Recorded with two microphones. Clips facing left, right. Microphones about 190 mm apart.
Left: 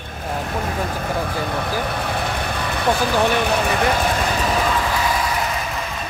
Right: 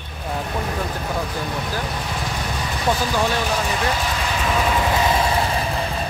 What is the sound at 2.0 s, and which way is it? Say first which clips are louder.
Vehicle: left 3 dB; 60° left (ahead or behind).